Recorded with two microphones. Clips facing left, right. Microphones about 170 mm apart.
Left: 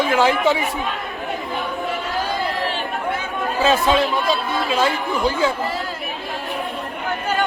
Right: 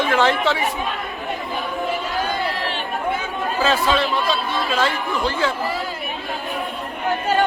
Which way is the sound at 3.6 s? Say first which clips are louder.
Left 3 dB; 20° left (ahead or behind).